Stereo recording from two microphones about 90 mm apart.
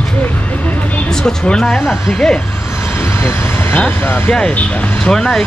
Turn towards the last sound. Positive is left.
turn(degrees=5)  # may be behind; listen again after turning